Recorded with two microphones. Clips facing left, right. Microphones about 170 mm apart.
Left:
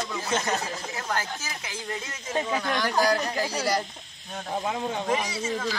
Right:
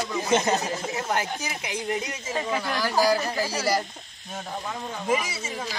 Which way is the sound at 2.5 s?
5° right (ahead or behind).